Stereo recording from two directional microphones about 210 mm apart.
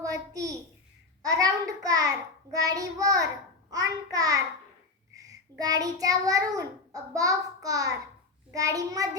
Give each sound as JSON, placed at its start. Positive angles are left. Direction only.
{"t": 0.0, "sound": "a sound", "side_deg": -15}
{"t": 1.2, "sound": "child singing", "side_deg": -15}
{"t": 5.1, "sound": "a child's voice", "side_deg": -15}
{"t": 8.5, "sound": "child singing", "side_deg": -15}